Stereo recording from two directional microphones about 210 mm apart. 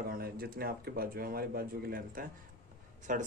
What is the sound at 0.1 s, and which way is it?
Speech, 45° right (ahead or behind).